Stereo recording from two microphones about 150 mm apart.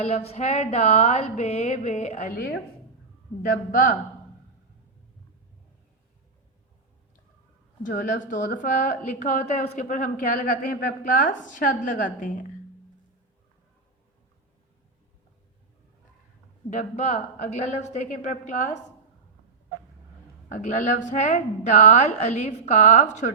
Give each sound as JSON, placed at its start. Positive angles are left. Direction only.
{"t": 0.0, "sound": "a woman's voice", "side_deg": 45}
{"t": 2.3, "sound": "speech", "side_deg": 80}
{"t": 3.4, "sound": "a woman's voice", "side_deg": 65}
{"t": 7.9, "sound": "a woman's voice", "side_deg": 60}
{"t": 16.6, "sound": "a woman's voice", "side_deg": 50}
{"t": 20.5, "sound": "a woman's voice", "side_deg": 55}